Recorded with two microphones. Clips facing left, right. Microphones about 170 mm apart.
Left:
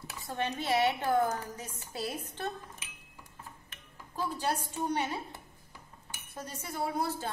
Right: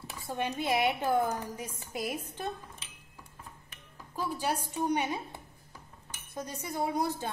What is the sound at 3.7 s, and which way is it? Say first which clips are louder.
Speech: right 1 dB; 10° right (ahead or behind).